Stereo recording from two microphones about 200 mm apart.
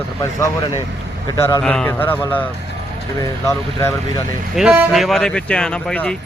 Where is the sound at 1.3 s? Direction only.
15° left (ahead or behind).